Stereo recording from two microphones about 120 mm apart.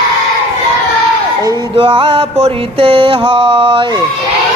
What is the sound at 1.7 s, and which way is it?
Mantra, 50° right (ahead or behind).